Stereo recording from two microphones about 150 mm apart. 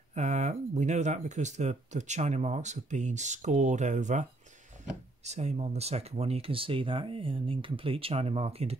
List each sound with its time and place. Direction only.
0.1 s speech: 50° right (ahead or behind)